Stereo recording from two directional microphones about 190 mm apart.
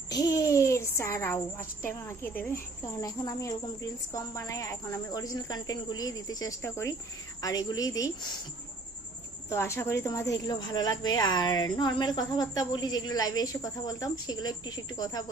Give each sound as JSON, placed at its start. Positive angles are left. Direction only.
{"t": 0.1, "sound": "a woman's voice", "side_deg": 20}
{"t": 9.5, "sound": "a woman's voice", "side_deg": 15}